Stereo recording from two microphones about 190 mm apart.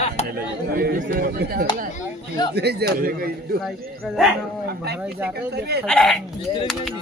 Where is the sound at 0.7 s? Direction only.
50° right (ahead or behind).